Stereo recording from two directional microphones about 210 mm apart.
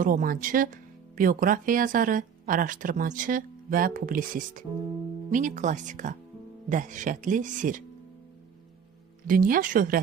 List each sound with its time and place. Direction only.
0.0 s speech: 40° right (ahead or behind)
9.2 s speech: 40° right (ahead or behind)